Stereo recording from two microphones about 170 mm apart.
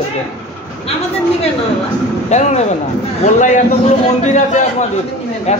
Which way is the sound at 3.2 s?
50° left (ahead or behind).